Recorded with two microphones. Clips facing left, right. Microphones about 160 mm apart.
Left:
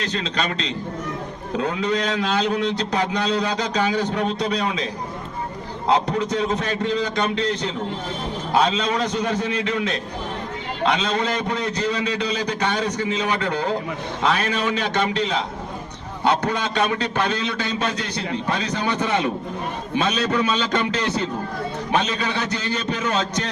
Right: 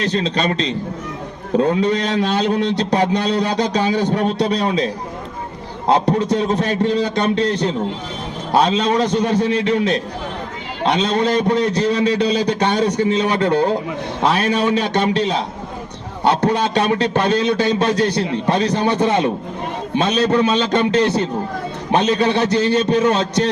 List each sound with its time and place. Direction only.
0.0 s a man's voice: 35° right (ahead or behind)
6.1 s a man's voice: 30° right (ahead or behind)
21.9 s a man's voice: 30° right (ahead or behind)